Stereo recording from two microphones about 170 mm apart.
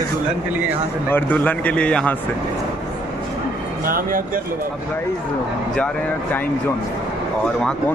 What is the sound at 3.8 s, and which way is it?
Speech, 55° right (ahead or behind).